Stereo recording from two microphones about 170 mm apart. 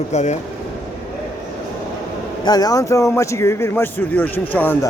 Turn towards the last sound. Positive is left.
turn(degrees=10)  # may be behind; listen again after turning